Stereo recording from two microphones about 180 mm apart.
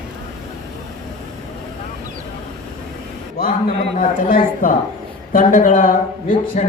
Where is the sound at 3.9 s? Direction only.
40° left (ahead or behind).